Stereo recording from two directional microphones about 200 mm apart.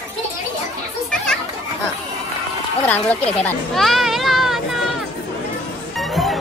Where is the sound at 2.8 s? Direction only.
10° left (ahead or behind).